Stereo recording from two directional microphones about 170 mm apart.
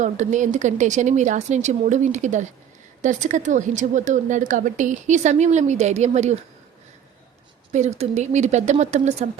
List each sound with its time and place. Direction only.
0.0 s speech: 45° right (ahead or behind)
7.7 s speech: 40° right (ahead or behind)